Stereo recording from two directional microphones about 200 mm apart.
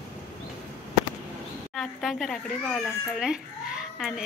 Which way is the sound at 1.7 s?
Centre (ahead or behind).